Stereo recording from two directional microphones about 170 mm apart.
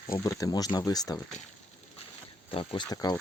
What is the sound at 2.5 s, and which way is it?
Speech, 30° left (ahead or behind).